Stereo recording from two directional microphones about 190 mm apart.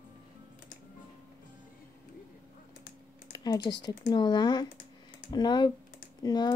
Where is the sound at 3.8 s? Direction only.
20° left (ahead or behind).